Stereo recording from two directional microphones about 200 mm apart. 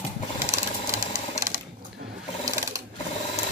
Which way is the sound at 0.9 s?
15° right (ahead or behind).